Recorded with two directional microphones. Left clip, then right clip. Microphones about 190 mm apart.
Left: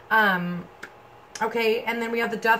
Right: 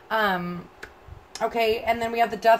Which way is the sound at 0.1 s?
40° right (ahead or behind).